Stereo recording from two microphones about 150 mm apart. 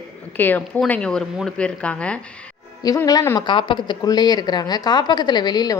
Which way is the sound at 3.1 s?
25° left (ahead or behind).